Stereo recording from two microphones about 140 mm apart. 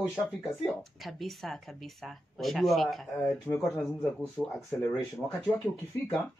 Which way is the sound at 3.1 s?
10° left (ahead or behind).